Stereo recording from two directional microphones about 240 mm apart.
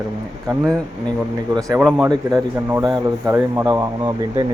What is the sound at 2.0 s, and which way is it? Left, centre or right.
Speech, centre.